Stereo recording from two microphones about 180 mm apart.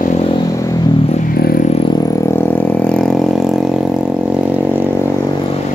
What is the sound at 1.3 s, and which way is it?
Vehicle, 55° left (ahead or behind).